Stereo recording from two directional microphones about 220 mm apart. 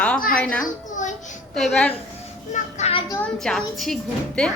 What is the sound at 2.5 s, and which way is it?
Speech, 25° left (ahead or behind).